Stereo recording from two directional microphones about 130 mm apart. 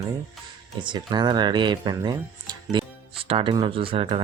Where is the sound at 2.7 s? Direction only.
45° right (ahead or behind).